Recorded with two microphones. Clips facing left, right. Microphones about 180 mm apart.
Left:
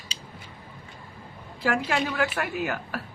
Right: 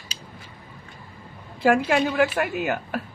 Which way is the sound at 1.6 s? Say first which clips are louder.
Right 6 dB; 20° right (ahead or behind).